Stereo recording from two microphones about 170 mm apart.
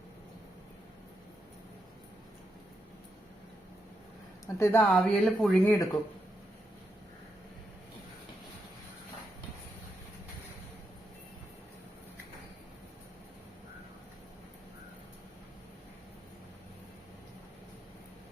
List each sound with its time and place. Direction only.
4.4 s speech: 15° left (ahead or behind)
5.6 s speech: 20° left (ahead or behind)